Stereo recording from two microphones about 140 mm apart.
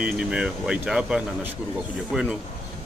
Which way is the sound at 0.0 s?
5° right (ahead or behind).